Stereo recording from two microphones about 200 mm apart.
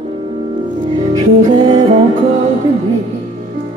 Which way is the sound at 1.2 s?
25° right (ahead or behind).